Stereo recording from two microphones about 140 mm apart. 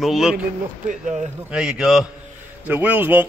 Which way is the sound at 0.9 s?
60° right (ahead or behind).